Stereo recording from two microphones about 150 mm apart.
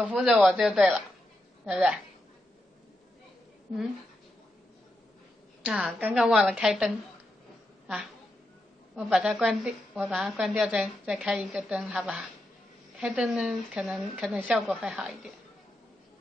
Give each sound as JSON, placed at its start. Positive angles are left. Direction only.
{"t": 0.0, "sound": "a woman's voice", "side_deg": -5}
{"t": 5.6, "sound": "a woman's voice", "side_deg": -5}
{"t": 8.9, "sound": "a woman's voice", "side_deg": -5}